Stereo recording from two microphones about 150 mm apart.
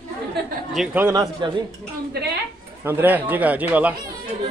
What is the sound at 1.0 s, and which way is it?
Speech, 25° right (ahead or behind).